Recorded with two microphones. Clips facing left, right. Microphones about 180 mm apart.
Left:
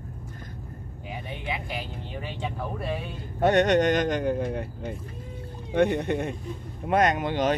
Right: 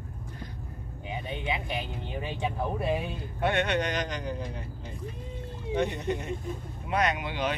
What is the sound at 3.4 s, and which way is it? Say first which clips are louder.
Speech: left 7 dB; 45° left (ahead or behind).